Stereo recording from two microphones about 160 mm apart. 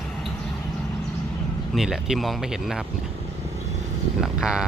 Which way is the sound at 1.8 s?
Centre (ahead or behind).